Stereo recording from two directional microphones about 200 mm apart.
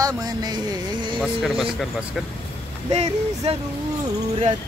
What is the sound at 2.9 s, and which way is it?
Speech, 35° right (ahead or behind).